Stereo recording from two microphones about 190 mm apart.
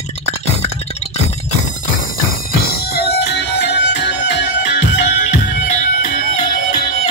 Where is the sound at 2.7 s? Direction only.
55° left (ahead or behind).